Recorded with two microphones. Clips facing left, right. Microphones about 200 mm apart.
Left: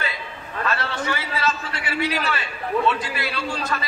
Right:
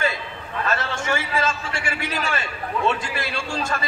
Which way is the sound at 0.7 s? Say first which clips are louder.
Right 1 dB; 45° right (ahead or behind).